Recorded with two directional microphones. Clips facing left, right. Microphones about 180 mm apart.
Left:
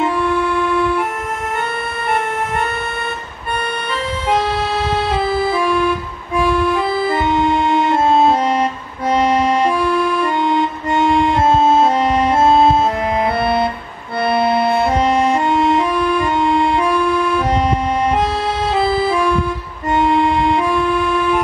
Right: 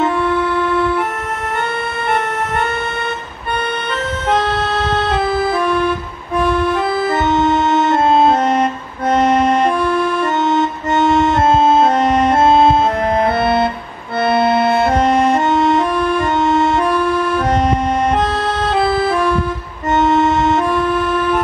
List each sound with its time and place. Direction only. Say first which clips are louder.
4.3 s vehicle: right 1 dB; 5° left (ahead or behind)
8.1 s music: right 1 dB; 5° left (ahead or behind)
9.4 s music: right 1 dB; centre (ahead or behind)
10.9 s music: right 1 dB; centre (ahead or behind)
17.5 s music: right 1 dB; centre (ahead or behind)